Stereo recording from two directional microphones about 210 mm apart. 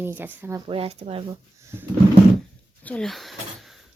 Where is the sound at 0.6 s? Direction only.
25° right (ahead or behind).